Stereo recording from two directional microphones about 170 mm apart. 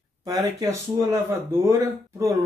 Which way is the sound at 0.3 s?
20° right (ahead or behind).